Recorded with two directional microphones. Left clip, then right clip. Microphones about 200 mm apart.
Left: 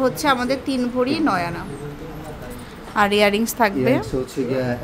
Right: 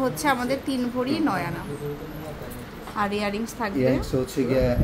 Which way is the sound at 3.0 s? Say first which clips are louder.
Left 10 dB; 30° left (ahead or behind).